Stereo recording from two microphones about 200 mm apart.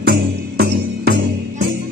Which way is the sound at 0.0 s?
55° right (ahead or behind).